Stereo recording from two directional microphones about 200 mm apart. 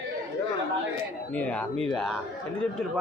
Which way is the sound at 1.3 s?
5° left (ahead or behind).